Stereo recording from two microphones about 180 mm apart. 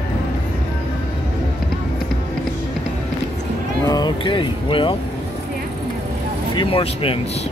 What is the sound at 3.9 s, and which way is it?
Music, 25° left (ahead or behind).